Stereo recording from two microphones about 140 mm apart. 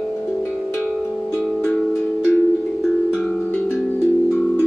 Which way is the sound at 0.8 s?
10° left (ahead or behind).